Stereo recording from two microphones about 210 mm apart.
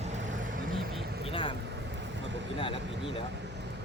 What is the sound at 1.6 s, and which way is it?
Vehicle, 55° right (ahead or behind).